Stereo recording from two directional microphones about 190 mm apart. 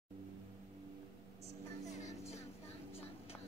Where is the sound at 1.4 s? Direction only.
35° left (ahead or behind).